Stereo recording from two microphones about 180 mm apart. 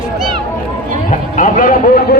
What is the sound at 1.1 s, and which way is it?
Speech, 45° left (ahead or behind).